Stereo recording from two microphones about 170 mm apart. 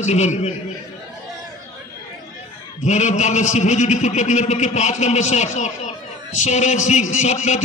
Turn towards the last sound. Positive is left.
turn(degrees=45)  # may be behind; listen again after turning